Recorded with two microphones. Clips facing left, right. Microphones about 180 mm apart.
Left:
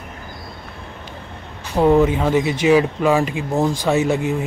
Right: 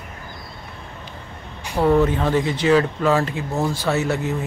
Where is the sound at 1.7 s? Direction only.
15° left (ahead or behind).